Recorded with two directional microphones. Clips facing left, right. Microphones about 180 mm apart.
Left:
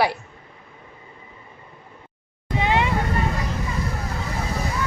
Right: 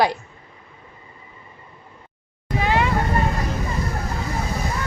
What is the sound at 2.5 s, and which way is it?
Vehicle, 20° left (ahead or behind).